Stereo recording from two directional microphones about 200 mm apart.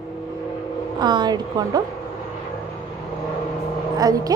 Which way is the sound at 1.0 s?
20° right (ahead or behind).